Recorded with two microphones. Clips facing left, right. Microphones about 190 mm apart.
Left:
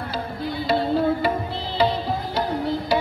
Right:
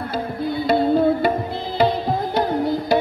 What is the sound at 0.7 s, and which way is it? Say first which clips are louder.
Music: right 4 dB; 55° right (ahead or behind).